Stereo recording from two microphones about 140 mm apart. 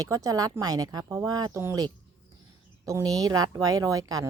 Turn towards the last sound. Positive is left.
turn(degrees=-25)  # may be behind; listen again after turning